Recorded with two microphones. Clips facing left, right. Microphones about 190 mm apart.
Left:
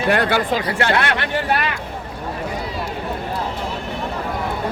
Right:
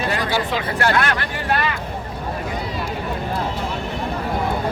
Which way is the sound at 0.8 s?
25° left (ahead or behind).